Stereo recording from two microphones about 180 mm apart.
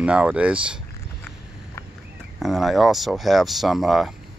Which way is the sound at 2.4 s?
Centre (ahead or behind).